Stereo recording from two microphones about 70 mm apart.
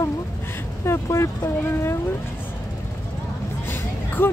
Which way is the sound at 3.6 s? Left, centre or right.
Left.